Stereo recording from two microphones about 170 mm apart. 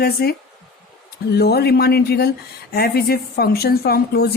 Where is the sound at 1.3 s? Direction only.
70° left (ahead or behind).